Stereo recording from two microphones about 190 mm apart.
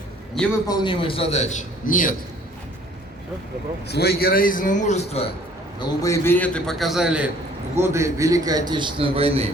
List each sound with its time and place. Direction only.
0.7 s a man's voice: 25° left (ahead or behind); by 2.1 s 45° left (ahead or behind)
3.8 s a man's voice: 60° left (ahead or behind); by 5.3 s 35° left (ahead or behind)
5.8 s a man's voice: 15° left (ahead or behind); by 7.3 s 5° right (ahead or behind)
7.8 s a man's voice: 15° right (ahead or behind); by 9.5 s 30° right (ahead or behind)